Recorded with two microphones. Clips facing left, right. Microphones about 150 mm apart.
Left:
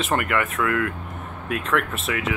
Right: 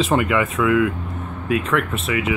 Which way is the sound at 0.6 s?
15° right (ahead or behind).